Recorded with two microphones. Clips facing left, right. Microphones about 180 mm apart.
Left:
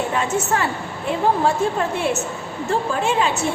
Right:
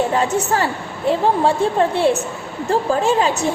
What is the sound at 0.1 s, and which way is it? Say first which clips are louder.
A woman's voice: right 3 dB; 35° right (ahead or behind).